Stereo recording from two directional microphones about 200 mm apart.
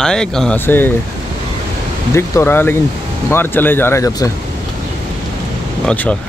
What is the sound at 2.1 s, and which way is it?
Speech, 15° left (ahead or behind).